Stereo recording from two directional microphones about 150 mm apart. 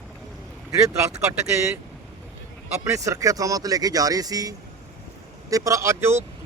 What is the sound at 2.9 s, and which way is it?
Speech, 20° right (ahead or behind).